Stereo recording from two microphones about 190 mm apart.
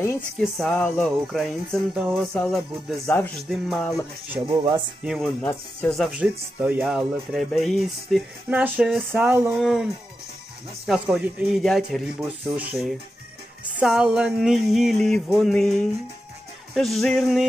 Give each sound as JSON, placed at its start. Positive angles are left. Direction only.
{"t": 0.4, "sound": "speech", "side_deg": 5}
{"t": 4.5, "sound": "speech", "side_deg": -20}
{"t": 5.0, "sound": "speech", "side_deg": 0}
{"t": 10.9, "sound": "speech", "side_deg": 0}